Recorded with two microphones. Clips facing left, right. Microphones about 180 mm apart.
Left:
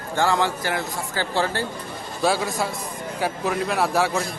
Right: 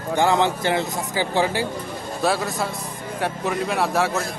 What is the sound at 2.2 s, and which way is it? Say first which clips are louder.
A man's voice: even; centre (ahead or behind).